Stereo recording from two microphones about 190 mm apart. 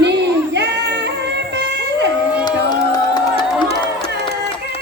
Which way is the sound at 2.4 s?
20° left (ahead or behind).